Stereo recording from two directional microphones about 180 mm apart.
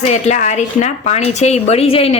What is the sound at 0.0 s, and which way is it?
Speech, 40° left (ahead or behind).